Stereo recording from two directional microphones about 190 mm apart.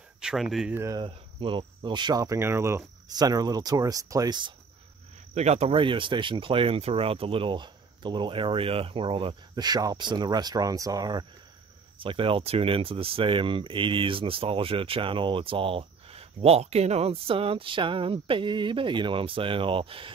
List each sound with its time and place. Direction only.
0.2 s speech: 5° right (ahead or behind)
0.7 s speech: 15° right (ahead or behind)
1.0 s speech: 30° right (ahead or behind)
5.3 s speech: 35° right (ahead or behind)